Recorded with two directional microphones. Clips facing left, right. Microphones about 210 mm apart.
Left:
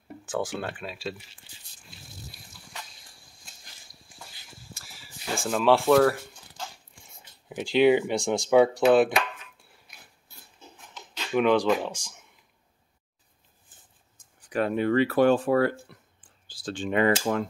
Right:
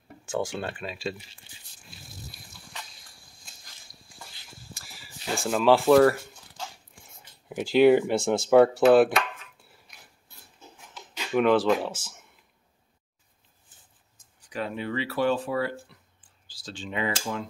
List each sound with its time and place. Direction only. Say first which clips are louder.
0.2 s speech: right 1 dB; centre (ahead or behind)
1.5 s speech: even; 20° right (ahead or behind)
5.3 s speech: right 1 dB; centre (ahead or behind)
11.0 s speech: even; 5° right (ahead or behind)
14.5 s speech: left 7 dB; 55° left (ahead or behind)